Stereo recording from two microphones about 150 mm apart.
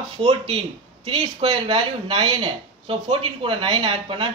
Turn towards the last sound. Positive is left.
turn(degrees=-35)  # may be behind; listen again after turning